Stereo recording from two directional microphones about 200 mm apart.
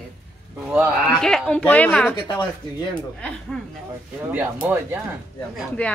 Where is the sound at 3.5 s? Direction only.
5° left (ahead or behind).